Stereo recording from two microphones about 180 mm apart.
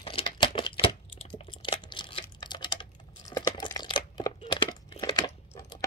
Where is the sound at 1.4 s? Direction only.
30° left (ahead or behind).